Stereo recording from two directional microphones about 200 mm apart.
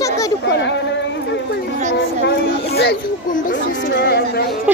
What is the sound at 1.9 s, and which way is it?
Speech, 55° left (ahead or behind).